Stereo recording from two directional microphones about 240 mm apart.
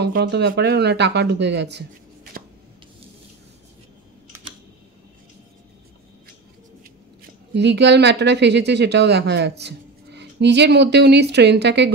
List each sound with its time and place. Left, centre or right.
0.0 s speech: right
7.5 s speech: right